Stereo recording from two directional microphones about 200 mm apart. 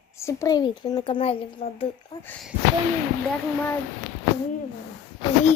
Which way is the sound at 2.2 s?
10° left (ahead or behind).